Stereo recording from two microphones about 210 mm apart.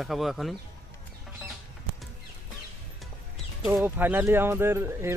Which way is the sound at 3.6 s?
5° right (ahead or behind).